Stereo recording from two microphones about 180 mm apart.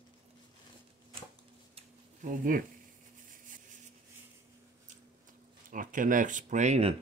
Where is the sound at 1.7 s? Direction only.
45° right (ahead or behind).